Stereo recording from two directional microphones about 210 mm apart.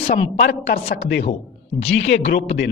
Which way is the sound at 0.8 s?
45° left (ahead or behind).